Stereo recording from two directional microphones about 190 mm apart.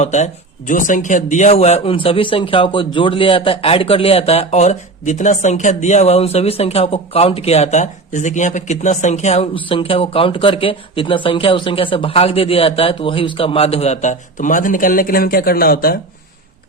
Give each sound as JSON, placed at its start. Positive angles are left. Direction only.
{"t": 0.0, "sound": "a man's voice", "side_deg": 40}